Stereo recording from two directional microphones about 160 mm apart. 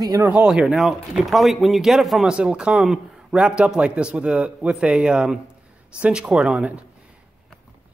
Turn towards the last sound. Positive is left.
turn(degrees=-5)  # may be behind; listen again after turning